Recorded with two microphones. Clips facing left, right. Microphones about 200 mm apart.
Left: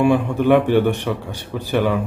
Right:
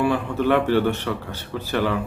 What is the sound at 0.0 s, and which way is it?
A man's voice, 15° left (ahead or behind).